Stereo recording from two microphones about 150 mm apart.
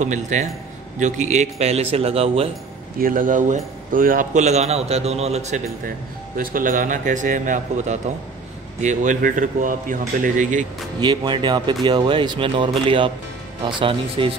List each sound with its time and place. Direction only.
0.0 s a man's voice: 55° right (ahead or behind)
3.0 s a man's voice: 65° right (ahead or behind); by 5.6 s 45° right (ahead or behind)
6.3 s a man's voice: 65° right (ahead or behind)
11.0 s speech: 30° right (ahead or behind)